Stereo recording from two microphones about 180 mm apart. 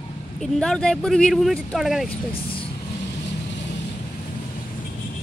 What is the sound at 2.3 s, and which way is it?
Speech, 30° left (ahead or behind).